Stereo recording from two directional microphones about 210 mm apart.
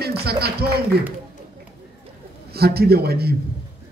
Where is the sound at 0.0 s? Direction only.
50° right (ahead or behind).